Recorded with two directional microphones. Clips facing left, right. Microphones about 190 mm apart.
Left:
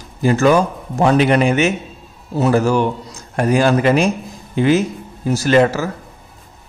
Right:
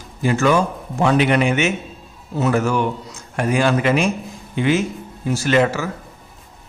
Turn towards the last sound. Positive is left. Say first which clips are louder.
# left 4 dB
turn(degrees=40)  # may be behind; listen again after turning